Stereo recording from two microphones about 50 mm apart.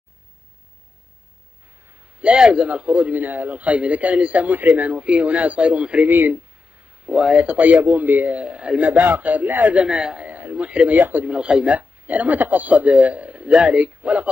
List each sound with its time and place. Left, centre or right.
2.1 s a man's voice: centre
6.0 s a man's voice: right
7.1 s a man's voice: centre; by 8.4 s right
8.4 s a man's voice: right
9.8 s speech: centre
10.2 s speech: right
11.0 s a man's voice: right
11.2 s a man's voice: centre